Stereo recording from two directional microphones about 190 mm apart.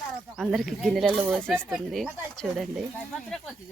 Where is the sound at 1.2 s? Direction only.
10° right (ahead or behind).